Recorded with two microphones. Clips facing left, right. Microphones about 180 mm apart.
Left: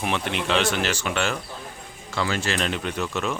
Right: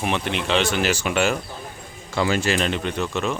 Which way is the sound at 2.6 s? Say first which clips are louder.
Right 3 dB; centre (ahead or behind).